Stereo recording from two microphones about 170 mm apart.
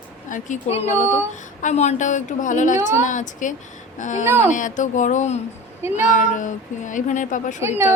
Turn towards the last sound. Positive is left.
turn(degrees=-15)  # may be behind; listen again after turning